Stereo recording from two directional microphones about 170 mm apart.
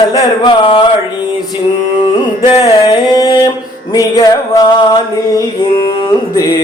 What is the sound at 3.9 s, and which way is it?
Music, 20° left (ahead or behind).